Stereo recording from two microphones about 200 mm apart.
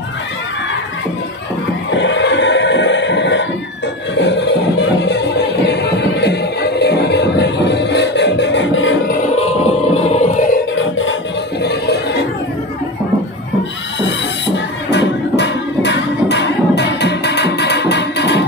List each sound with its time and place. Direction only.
1.9 s music: 65° left (ahead or behind)
9.4 s music: 30° left (ahead or behind)
10.8 s music: 70° left (ahead or behind)
11.6 s music: 55° left (ahead or behind)
14.9 s music: 60° left (ahead or behind)